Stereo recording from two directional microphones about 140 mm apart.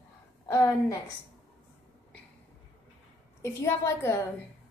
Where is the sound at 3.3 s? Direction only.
20° left (ahead or behind).